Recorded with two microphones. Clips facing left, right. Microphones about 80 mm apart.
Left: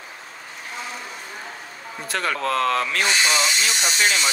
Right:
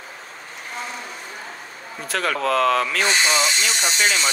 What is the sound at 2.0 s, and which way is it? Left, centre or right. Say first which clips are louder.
Speech: right 2 dB; centre.